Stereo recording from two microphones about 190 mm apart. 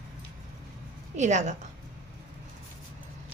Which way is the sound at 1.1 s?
40° right (ahead or behind).